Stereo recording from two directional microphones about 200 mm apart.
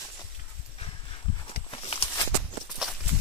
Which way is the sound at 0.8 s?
25° left (ahead or behind).